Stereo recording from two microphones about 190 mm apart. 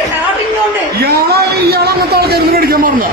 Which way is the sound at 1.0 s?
55° right (ahead or behind).